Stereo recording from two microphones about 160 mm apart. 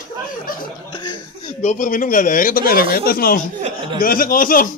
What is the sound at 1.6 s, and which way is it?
Speech, 55° left (ahead or behind).